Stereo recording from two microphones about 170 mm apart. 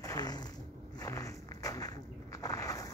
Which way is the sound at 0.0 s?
20° left (ahead or behind).